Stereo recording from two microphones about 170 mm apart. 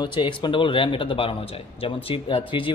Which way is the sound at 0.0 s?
25° left (ahead or behind).